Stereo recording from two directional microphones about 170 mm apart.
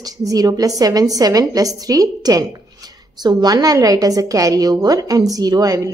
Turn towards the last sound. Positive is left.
turn(degrees=-20)  # may be behind; listen again after turning